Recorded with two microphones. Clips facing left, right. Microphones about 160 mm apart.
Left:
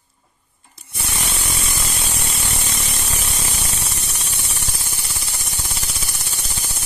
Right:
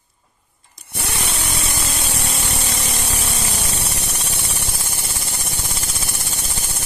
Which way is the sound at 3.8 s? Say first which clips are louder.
Right 4 dB; 70° right (ahead or behind).